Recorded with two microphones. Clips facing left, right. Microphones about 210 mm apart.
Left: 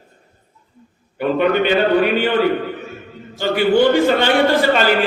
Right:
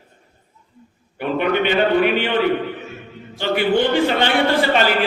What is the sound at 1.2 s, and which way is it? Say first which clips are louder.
A man's voice: left 3 dB; 40° left (ahead or behind).